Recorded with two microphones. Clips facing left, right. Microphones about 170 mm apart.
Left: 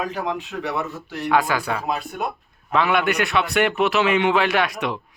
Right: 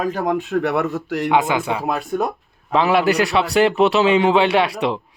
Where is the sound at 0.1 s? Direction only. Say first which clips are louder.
Right 7 dB; 50° right (ahead or behind).